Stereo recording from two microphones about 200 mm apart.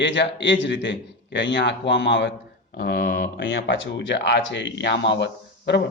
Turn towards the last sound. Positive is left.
turn(degrees=60)  # may be behind; listen again after turning